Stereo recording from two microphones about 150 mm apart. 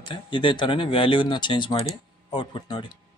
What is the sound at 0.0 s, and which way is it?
Speech, 35° left (ahead or behind).